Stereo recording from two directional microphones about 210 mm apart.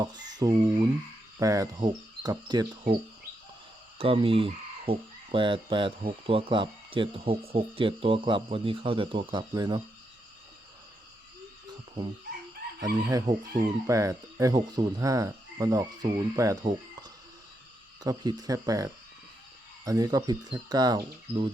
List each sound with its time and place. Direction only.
0.0 s speech: 20° right (ahead or behind)
1.4 s frog: 15° right (ahead or behind)
3.9 s speech: 25° right (ahead or behind)
12.8 s frog: 15° right (ahead or behind)
19.8 s speech: 15° right (ahead or behind)